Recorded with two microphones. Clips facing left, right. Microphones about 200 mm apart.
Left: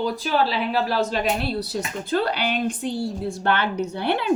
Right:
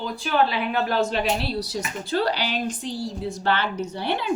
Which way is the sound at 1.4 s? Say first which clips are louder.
Left 2 dB; 50° left (ahead or behind).